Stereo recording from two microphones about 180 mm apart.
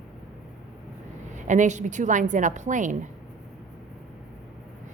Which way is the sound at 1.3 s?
45° right (ahead or behind).